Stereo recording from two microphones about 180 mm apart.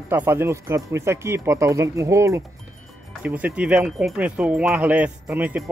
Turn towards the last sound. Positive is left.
turn(degrees=-10)  # may be behind; listen again after turning